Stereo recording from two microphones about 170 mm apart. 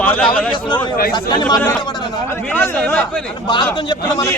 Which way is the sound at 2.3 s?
10° left (ahead or behind).